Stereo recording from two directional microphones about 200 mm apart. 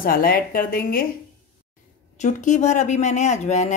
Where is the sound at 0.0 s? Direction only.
45° left (ahead or behind).